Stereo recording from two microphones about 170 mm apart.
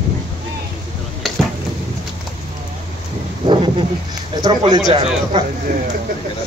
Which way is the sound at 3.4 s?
30° right (ahead or behind).